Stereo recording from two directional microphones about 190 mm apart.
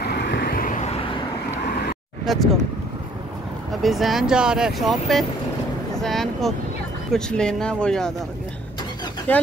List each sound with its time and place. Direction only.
0.0 s vehicle: 60° left (ahead or behind); by 1.0 s 35° left (ahead or behind)
2.3 s speech: centre (ahead or behind)
3.8 s speech: centre (ahead or behind)